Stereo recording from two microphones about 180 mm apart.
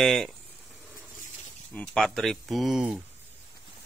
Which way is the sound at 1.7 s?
5° left (ahead or behind).